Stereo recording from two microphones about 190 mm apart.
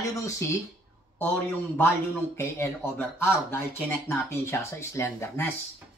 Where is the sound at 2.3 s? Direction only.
15° left (ahead or behind).